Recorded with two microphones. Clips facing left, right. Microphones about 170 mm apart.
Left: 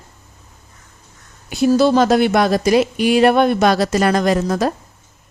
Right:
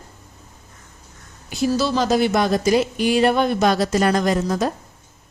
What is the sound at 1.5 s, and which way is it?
Speech, 60° left (ahead or behind).